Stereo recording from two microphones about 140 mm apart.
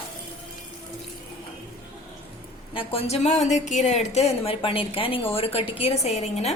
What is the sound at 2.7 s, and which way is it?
A woman's voice, 45° left (ahead or behind).